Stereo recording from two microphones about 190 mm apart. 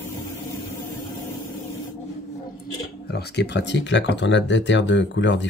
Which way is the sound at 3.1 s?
60° left (ahead or behind).